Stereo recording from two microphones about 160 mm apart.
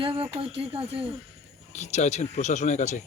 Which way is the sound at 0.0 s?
35° right (ahead or behind).